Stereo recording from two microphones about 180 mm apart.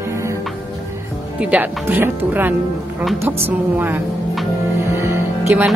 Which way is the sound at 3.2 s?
15° right (ahead or behind).